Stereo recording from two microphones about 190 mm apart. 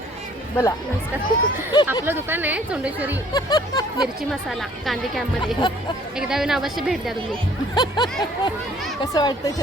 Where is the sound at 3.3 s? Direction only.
20° left (ahead or behind).